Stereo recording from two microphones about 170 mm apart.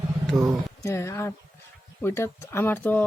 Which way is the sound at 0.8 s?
15° left (ahead or behind).